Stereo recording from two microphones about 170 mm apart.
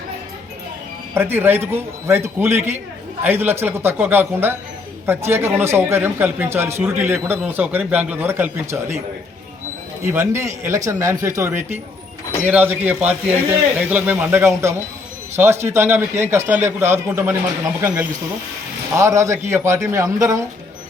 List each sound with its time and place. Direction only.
1.1 s speech: 15° right (ahead or behind)
10.0 s speech: 15° right (ahead or behind)